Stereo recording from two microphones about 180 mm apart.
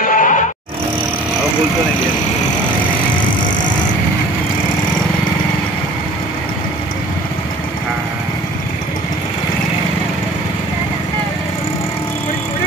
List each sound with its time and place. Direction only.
0.1 s music: 45° left (ahead or behind)